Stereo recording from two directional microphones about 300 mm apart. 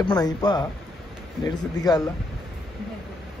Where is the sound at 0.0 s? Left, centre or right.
Centre.